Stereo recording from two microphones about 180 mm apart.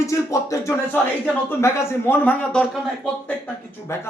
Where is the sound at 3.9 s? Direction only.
15° left (ahead or behind).